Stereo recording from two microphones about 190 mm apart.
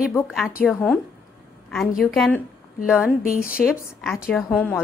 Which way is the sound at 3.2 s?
50° left (ahead or behind).